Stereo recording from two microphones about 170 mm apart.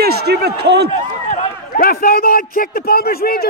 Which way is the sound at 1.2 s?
55° left (ahead or behind).